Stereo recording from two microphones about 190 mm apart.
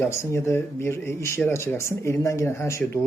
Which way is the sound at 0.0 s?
15° left (ahead or behind).